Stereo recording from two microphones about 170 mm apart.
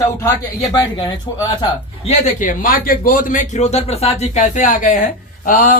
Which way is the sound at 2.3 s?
55° left (ahead or behind).